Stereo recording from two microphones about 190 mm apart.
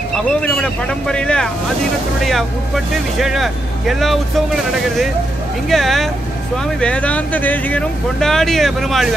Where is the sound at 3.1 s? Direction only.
Centre (ahead or behind).